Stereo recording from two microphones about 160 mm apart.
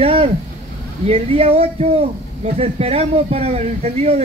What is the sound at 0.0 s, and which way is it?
A man's voice, 35° right (ahead or behind).